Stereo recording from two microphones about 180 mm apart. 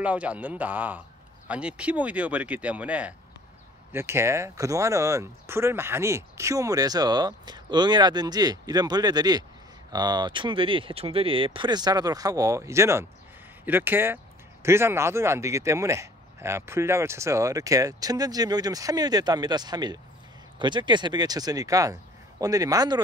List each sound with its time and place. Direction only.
0.0 s speech: 10° right (ahead or behind)